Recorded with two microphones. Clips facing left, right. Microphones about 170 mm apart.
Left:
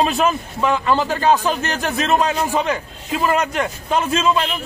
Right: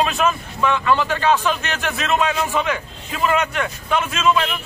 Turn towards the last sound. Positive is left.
turn(degrees=35)  # may be behind; listen again after turning